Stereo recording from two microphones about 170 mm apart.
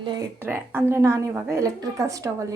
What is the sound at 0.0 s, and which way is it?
Speech, 25° right (ahead or behind).